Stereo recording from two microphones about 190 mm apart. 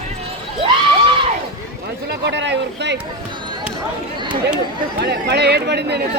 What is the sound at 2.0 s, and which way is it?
Speech, 65° right (ahead or behind).